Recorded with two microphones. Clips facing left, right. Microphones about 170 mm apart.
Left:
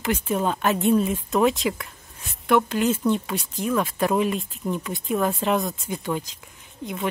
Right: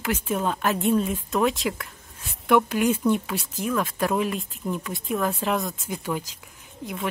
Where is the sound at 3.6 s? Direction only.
5° left (ahead or behind).